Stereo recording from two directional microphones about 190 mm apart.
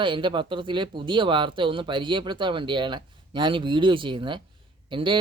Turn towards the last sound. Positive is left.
turn(degrees=-25)  # may be behind; listen again after turning